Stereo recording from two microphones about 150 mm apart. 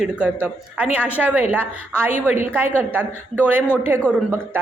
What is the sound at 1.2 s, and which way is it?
A woman's voice, 10° right (ahead or behind).